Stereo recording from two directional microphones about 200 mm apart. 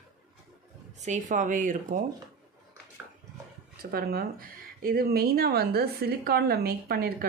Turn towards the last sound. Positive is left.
turn(degrees=-50)  # may be behind; listen again after turning